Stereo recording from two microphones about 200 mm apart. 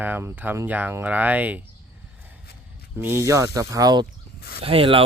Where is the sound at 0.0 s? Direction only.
10° right (ahead or behind).